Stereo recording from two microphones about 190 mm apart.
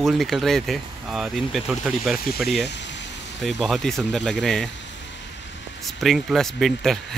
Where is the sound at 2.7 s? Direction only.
65° left (ahead or behind).